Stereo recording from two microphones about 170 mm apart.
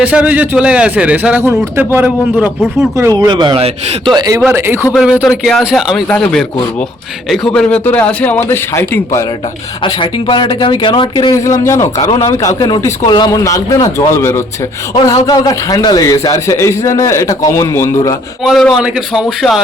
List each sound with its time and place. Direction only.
0.0 s a man's voice: 10° right (ahead or behind); by 4.4 s 25° right (ahead or behind)
4.4 s a man's voice: 10° right (ahead or behind)
5.4 s a man's voice: centre (ahead or behind)
9.8 s a man's voice: 30° left (ahead or behind)
18.4 s speech: centre (ahead or behind)